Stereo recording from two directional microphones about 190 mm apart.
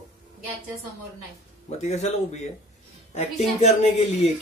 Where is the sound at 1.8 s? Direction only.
35° left (ahead or behind).